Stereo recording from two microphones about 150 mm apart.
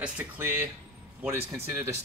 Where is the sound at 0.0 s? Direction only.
15° right (ahead or behind).